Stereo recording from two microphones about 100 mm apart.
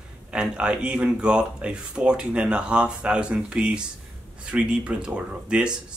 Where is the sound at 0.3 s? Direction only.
10° right (ahead or behind).